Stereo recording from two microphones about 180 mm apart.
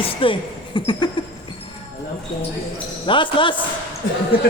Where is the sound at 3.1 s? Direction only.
30° left (ahead or behind).